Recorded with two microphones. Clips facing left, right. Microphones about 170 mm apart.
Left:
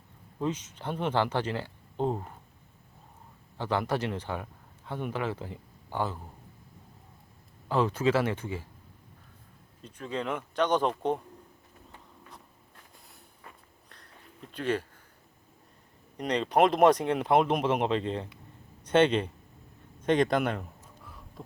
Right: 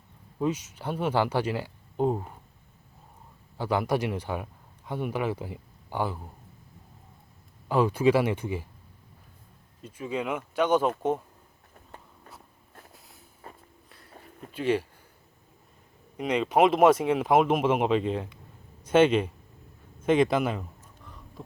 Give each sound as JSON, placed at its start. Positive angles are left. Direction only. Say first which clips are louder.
{"t": 0.3, "sound": "speech", "louder": "right 3 dB", "side_deg": -10}
{"t": 3.6, "sound": "speech", "louder": "right 3 dB", "side_deg": -10}
{"t": 7.7, "sound": "speech", "louder": "right 4 dB", "side_deg": -10}
{"t": 9.8, "sound": "speech", "louder": "right 2 dB", "side_deg": -10}
{"t": 13.4, "sound": "a sound", "louder": "right 5 dB", "side_deg": -30}
{"t": 14.5, "sound": "speech", "louder": "right 4 dB", "side_deg": -10}
{"t": 16.1, "sound": "speech", "louder": "right 2 dB", "side_deg": -5}